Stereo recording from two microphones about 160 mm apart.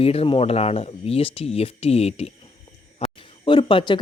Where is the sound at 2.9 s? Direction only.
35° left (ahead or behind).